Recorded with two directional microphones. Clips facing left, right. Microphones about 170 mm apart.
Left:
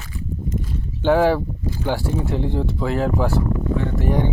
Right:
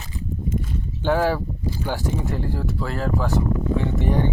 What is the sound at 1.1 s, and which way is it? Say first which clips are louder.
Speech: left 4 dB; 10° left (ahead or behind).